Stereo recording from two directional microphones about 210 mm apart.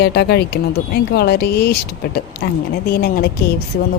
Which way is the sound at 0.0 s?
50° left (ahead or behind).